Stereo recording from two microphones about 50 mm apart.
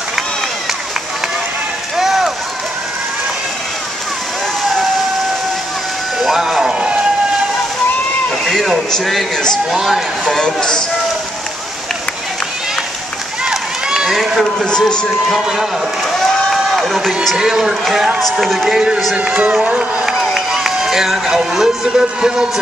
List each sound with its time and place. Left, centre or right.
2.0 s run: centre
6.2 s a sound: centre
6.7 s vehicle: centre
8.5 s a man's voice: centre
10.2 s speech: centre
13.5 s run: centre
14.6 s speech: centre
16.7 s speech: centre
17.4 s a man's voice: centre
19.6 s speech: right
20.1 s a man's voice: centre